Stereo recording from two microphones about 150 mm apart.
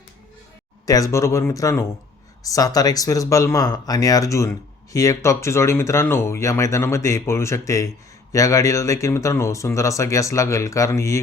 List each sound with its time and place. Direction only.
0.9 s speech: 20° left (ahead or behind)